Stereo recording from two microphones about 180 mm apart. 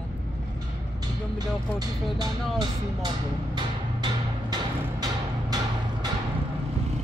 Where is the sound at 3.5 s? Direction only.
25° right (ahead or behind).